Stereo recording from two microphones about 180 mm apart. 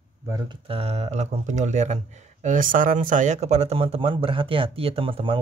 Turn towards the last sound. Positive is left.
turn(degrees=-30)  # may be behind; listen again after turning